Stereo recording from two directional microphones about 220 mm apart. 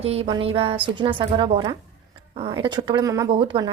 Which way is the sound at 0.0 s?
25° right (ahead or behind).